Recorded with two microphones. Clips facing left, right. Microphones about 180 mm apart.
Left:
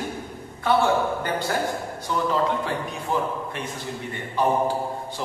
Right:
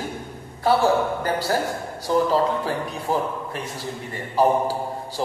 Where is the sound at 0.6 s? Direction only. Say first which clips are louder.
Right 2 dB; 35° right (ahead or behind).